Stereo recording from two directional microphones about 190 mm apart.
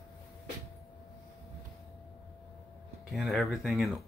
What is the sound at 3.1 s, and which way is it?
Speech, centre (ahead or behind).